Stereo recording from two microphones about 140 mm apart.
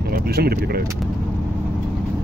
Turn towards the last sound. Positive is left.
turn(degrees=-90)